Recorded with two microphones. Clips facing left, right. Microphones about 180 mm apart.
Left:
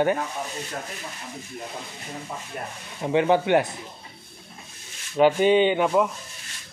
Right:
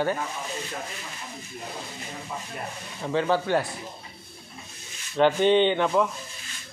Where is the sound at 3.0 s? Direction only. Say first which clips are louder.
Left 4 dB; 20° left (ahead or behind).